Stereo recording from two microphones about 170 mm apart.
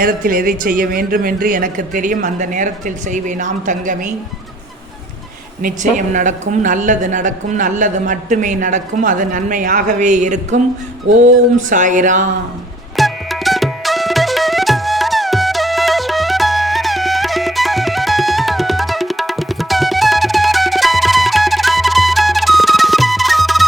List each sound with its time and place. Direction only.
0.0 s a woman's voice: 55° right (ahead or behind)
5.6 s a woman's voice: 45° right (ahead or behind)
13.0 s music: centre (ahead or behind)